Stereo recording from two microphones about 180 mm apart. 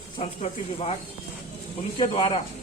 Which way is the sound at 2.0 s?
30° left (ahead or behind).